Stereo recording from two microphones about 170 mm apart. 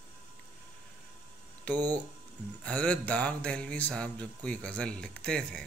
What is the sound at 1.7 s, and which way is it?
Speech, 25° right (ahead or behind).